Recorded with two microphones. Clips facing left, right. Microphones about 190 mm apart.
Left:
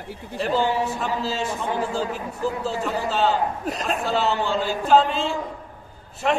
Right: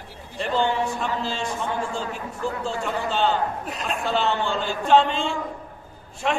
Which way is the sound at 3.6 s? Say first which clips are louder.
Left 4 dB; 40° left (ahead or behind).